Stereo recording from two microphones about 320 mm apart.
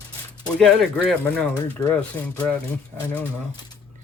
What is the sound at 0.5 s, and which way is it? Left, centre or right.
Speech, centre.